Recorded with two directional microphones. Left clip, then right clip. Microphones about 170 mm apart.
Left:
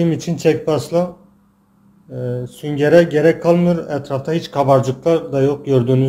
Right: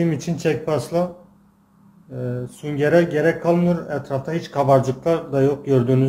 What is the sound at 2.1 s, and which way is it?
Speech, 30° left (ahead or behind).